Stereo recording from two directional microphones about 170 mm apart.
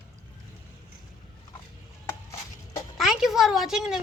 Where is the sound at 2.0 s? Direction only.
15° left (ahead or behind).